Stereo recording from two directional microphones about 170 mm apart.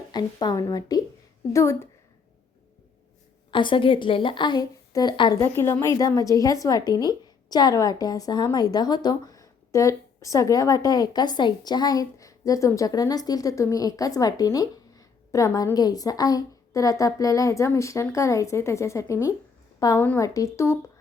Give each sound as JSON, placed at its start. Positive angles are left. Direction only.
{"t": 0.1, "sound": "a woman's voice", "side_deg": 25}
{"t": 3.5, "sound": "speech", "side_deg": 30}
{"t": 5.4, "sound": "a woman's voice", "side_deg": 15}